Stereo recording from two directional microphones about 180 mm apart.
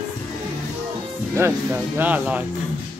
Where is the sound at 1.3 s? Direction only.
10° right (ahead or behind).